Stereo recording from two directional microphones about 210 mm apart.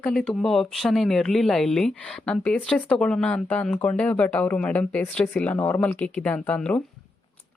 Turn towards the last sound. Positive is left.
turn(degrees=5)  # may be behind; listen again after turning